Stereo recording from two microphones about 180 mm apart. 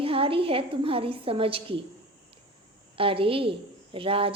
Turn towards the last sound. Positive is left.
turn(degrees=-30)  # may be behind; listen again after turning